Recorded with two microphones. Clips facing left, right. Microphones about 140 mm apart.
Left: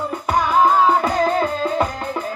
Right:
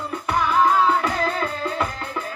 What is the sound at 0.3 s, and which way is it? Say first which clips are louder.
Music: left 3 dB; 35° left (ahead or behind).